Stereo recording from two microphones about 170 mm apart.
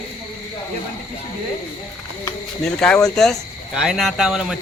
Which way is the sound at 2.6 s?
5° left (ahead or behind).